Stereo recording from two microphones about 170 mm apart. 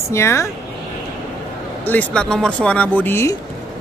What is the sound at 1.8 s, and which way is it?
Speech, 5° left (ahead or behind).